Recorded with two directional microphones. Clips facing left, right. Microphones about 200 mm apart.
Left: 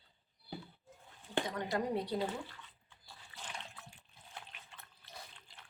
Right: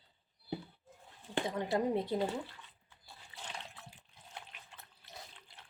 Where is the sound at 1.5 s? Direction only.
25° right (ahead or behind).